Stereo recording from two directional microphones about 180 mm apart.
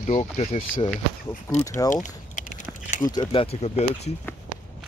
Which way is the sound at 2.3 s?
40° left (ahead or behind).